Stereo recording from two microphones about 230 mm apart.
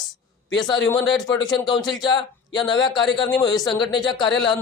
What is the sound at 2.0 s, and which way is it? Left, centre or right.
Speech, centre.